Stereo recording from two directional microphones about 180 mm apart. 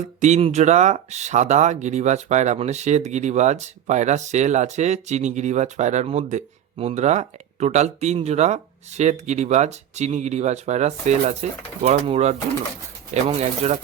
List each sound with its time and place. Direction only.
0.2 s speech: 35° right (ahead or behind)